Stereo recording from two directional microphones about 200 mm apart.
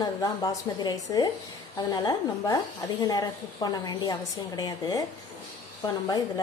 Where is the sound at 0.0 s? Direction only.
20° left (ahead or behind).